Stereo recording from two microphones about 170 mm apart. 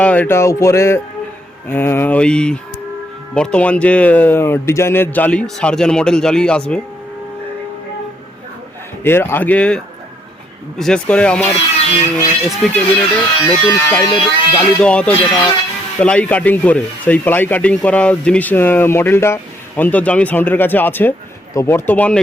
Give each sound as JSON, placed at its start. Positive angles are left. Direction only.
{"t": 0.0, "sound": "speech", "side_deg": 10}
{"t": 9.0, "sound": "speech", "side_deg": 15}
{"t": 11.5, "sound": "speech", "side_deg": 35}
{"t": 12.6, "sound": "speech", "side_deg": 0}
{"t": 13.4, "sound": "speech", "side_deg": 15}
{"t": 14.8, "sound": "speech", "side_deg": 5}
{"t": 15.1, "sound": "speech", "side_deg": 30}
{"t": 16.0, "sound": "speech", "side_deg": 5}